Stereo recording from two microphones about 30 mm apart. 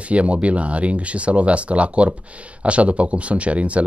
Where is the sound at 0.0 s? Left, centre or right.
Right.